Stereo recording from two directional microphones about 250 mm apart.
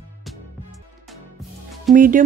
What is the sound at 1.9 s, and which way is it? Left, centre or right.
Speech, right.